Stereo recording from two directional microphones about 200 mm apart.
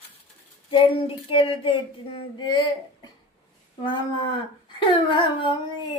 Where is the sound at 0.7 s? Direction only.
25° left (ahead or behind).